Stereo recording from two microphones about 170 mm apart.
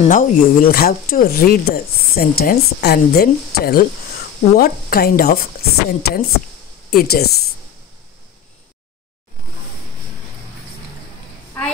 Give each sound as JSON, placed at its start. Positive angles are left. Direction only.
{"t": 0.0, "sound": "speech", "side_deg": 50}